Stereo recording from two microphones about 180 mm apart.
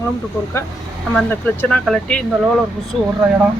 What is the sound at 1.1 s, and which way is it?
Speech, 10° left (ahead or behind).